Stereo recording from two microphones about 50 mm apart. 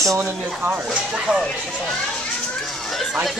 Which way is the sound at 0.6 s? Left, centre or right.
Right.